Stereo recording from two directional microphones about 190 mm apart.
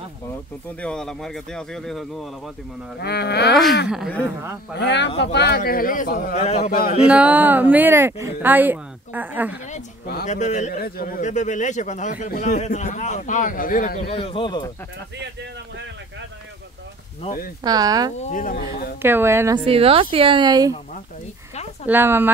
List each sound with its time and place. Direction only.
0.7 s speech: 5° left (ahead or behind)
3.0 s speech: 60° left (ahead or behind)
3.9 s speech: centre (ahead or behind)
4.7 s speech: 65° left (ahead or behind); by 6.7 s 35° left (ahead or behind)
6.7 s speech: 50° left (ahead or behind)
7.1 s speech: 5° right (ahead or behind)
9.7 s speech: 40° left (ahead or behind)
14.1 s speech: 30° left (ahead or behind)
17.6 s speech: 20° right (ahead or behind)
18.2 s speech: 45° left (ahead or behind)
18.9 s speech: 10° right (ahead or behind)
19.6 s speech: 30° right (ahead or behind)
21.8 s speech: 10° right (ahead or behind)